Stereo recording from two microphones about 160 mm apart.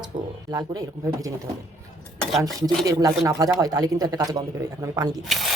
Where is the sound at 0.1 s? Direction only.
50° right (ahead or behind).